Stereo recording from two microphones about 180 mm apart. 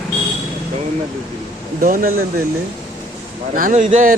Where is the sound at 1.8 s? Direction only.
50° right (ahead or behind).